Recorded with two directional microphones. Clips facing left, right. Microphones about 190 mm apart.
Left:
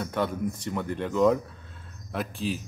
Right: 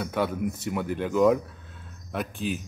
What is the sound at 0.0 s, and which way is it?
Speech, 5° right (ahead or behind).